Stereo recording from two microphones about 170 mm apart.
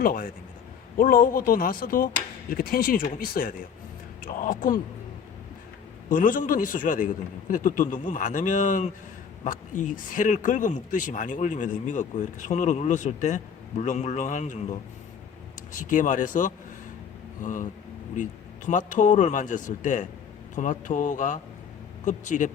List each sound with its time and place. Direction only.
0.0 s speech: 55° left (ahead or behind)
6.1 s speech: 50° left (ahead or behind)